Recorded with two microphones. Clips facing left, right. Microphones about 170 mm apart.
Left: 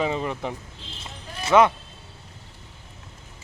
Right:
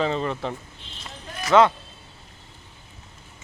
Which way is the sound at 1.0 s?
25° left (ahead or behind).